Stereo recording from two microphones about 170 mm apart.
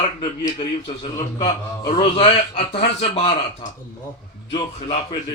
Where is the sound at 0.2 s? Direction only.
25° left (ahead or behind).